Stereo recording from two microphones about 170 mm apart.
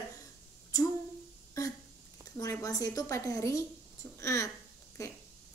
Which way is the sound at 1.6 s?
20° left (ahead or behind).